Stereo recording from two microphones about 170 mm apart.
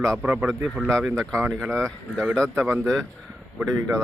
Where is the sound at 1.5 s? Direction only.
15° right (ahead or behind).